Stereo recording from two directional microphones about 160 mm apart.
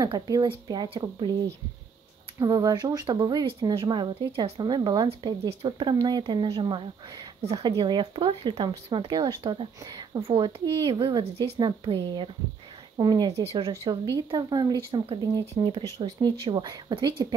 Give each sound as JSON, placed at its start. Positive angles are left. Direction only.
{"t": 0.0, "sound": "speech", "side_deg": -25}
{"t": 2.3, "sound": "speech", "side_deg": -25}
{"t": 7.4, "sound": "speech", "side_deg": -40}
{"t": 7.7, "sound": "speech", "side_deg": -30}
{"t": 13.4, "sound": "speech", "side_deg": -35}
{"t": 14.1, "sound": "speech", "side_deg": -25}